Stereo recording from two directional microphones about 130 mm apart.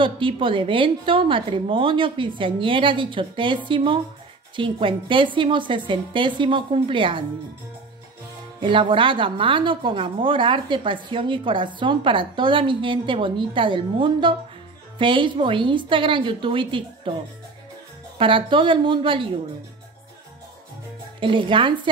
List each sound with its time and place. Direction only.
0.0 s a woman's voice: 40° right (ahead or behind)
8.5 s a woman's voice: 40° right (ahead or behind)
21.2 s a woman's voice: 40° right (ahead or behind)